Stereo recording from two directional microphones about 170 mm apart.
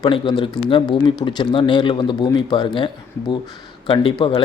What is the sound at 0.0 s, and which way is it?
Speech, 30° left (ahead or behind).